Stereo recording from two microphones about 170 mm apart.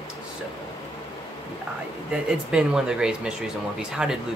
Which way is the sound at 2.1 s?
5° right (ahead or behind).